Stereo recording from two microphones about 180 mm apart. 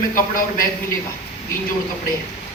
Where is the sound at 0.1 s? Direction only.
50° left (ahead or behind).